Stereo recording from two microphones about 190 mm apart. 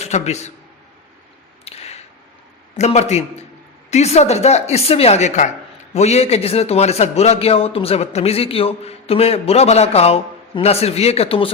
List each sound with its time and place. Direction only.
0.0 s a man's voice: 35° left (ahead or behind)
1.6 s a sound: 35° left (ahead or behind)
2.7 s a man's voice: 35° left (ahead or behind)